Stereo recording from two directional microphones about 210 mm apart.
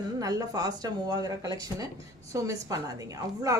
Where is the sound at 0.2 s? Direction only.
15° right (ahead or behind).